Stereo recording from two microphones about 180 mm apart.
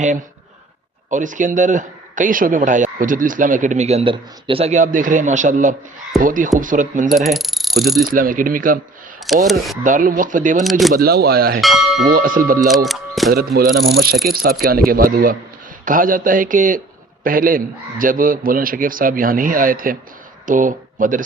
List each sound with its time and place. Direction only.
1.1 s a man's voice: 45° right (ahead or behind)
7.3 s cricket: centre (ahead or behind)
8.0 s a man's voice: 50° right (ahead or behind)
9.5 s speech: centre (ahead or behind)
9.8 s a man's voice: 50° right (ahead or behind)
10.6 s speech: centre (ahead or behind)
10.9 s mechanisms: 60° right (ahead or behind)
11.6 s speech: centre (ahead or behind)
12.0 s a man's voice: 55° right (ahead or behind)
12.6 s speech: centre (ahead or behind)
13.3 s mechanisms: 55° right (ahead or behind)
14.6 s a man's voice: 55° right (ahead or behind)